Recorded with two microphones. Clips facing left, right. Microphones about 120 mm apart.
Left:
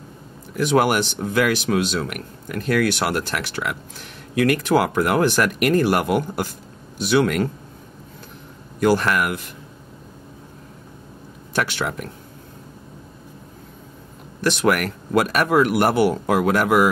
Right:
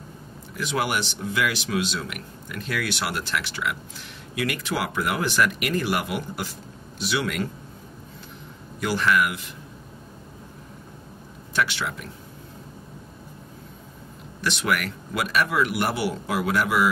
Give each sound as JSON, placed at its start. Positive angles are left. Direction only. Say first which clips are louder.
{"t": 0.6, "sound": "a man's voice", "louder": "left 8 dB", "side_deg": 50}
{"t": 8.7, "sound": "a man's voice", "louder": "left 4 dB", "side_deg": 50}
{"t": 11.5, "sound": "a man's voice", "louder": "left 3 dB", "side_deg": 50}
{"t": 14.4, "sound": "a man's voice", "louder": "left 6 dB", "side_deg": 50}